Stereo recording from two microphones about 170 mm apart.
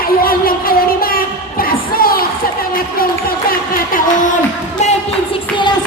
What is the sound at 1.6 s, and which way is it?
Music, 60° left (ahead or behind).